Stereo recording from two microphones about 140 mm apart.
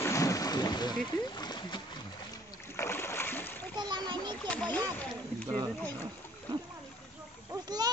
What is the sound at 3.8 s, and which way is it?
Splash, 30° right (ahead or behind).